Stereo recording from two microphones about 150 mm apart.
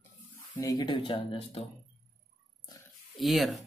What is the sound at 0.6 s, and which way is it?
Speech, 25° left (ahead or behind).